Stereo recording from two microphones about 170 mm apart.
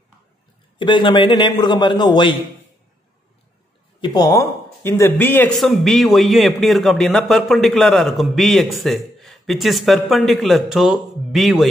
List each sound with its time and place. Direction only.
0.7 s a man's voice: 30° left (ahead or behind)
4.0 s speech: 20° left (ahead or behind)
5.6 s a man's voice: centre (ahead or behind)